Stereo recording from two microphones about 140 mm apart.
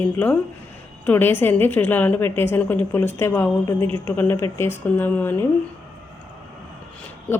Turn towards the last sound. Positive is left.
turn(degrees=10)  # may be behind; listen again after turning